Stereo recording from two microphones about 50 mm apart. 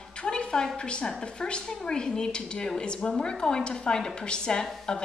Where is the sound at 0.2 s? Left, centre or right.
Centre.